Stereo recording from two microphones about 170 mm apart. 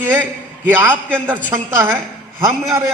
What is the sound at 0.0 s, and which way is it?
A woman's voice, 10° right (ahead or behind).